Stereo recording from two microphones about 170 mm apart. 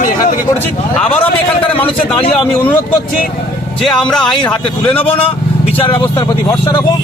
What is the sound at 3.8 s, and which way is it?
Speech, 5° left (ahead or behind).